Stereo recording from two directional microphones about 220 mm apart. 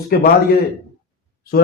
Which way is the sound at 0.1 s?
45° left (ahead or behind).